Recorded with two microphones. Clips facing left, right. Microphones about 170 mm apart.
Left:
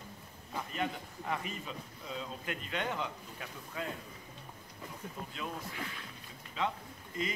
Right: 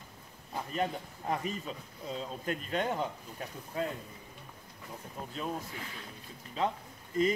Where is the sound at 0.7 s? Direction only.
35° right (ahead or behind).